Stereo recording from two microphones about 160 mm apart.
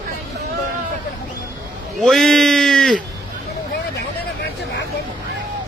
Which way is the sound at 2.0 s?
Centre (ahead or behind).